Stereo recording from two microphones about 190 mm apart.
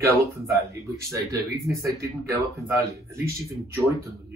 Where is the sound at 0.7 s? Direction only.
15° right (ahead or behind).